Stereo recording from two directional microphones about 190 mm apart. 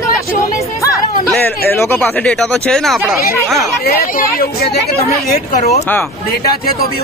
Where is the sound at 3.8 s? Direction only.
55° left (ahead or behind).